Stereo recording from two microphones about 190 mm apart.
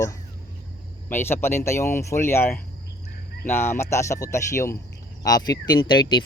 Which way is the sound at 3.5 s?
10° left (ahead or behind).